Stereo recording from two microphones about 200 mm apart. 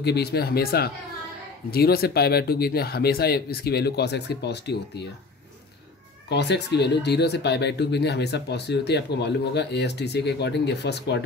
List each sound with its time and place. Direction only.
0.0 s speech: 55° left (ahead or behind)
6.2 s speech: 60° left (ahead or behind)